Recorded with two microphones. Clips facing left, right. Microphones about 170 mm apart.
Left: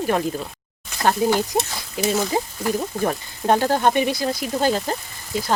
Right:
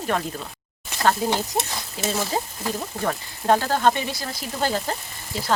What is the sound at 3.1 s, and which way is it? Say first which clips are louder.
Speech: right 1 dB; 20° left (ahead or behind).